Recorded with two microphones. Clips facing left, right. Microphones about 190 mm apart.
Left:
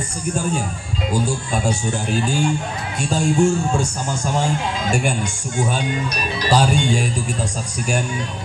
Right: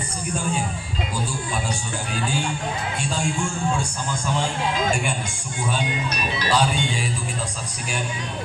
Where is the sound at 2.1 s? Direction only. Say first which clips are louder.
Left 5 dB; 45° left (ahead or behind).